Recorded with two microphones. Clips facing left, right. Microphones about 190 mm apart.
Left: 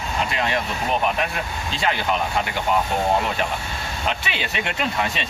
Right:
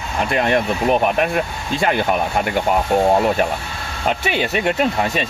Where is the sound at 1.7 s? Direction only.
50° right (ahead or behind).